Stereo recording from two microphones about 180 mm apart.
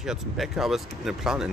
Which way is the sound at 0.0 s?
5° right (ahead or behind).